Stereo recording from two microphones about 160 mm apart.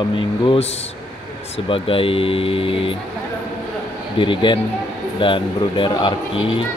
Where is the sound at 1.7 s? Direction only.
35° left (ahead or behind).